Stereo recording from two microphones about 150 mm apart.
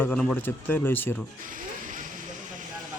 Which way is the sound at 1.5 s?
60° right (ahead or behind).